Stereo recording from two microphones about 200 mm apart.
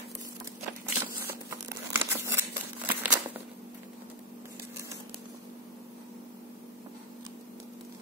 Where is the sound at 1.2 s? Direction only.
10° right (ahead or behind).